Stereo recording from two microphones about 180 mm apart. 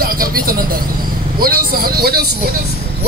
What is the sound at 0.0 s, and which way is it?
Vehicle, 55° right (ahead or behind).